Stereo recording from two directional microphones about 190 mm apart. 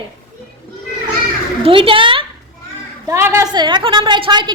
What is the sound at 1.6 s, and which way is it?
Speech, 30° right (ahead or behind).